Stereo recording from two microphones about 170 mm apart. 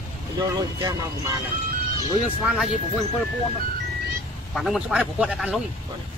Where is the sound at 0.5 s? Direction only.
20° right (ahead or behind).